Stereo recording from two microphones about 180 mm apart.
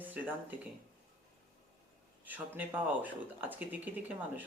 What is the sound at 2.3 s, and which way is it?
Speech, 10° right (ahead or behind).